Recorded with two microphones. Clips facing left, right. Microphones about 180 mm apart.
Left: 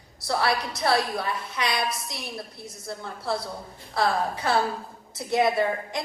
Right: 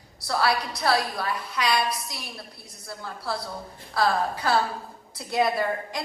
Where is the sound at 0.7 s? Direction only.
20° left (ahead or behind).